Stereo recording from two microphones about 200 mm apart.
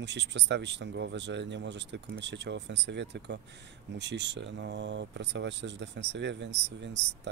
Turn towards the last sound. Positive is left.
turn(degrees=-60)  # may be behind; listen again after turning